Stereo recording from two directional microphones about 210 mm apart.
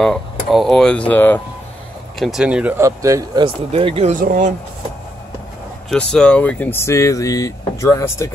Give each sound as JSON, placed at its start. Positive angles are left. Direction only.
{"t": 0.0, "sound": "speech", "side_deg": 0}
{"t": 2.1, "sound": "speech", "side_deg": 0}
{"t": 5.9, "sound": "speech", "side_deg": 5}